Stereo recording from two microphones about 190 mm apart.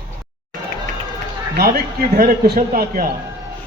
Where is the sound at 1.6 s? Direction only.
55° right (ahead or behind).